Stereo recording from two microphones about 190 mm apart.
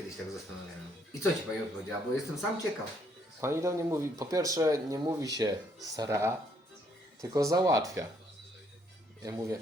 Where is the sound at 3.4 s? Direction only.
15° right (ahead or behind).